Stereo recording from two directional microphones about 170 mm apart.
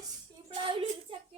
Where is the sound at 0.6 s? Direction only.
30° right (ahead or behind).